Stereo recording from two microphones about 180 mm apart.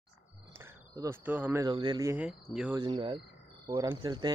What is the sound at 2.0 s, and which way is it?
Speech, 5° right (ahead or behind).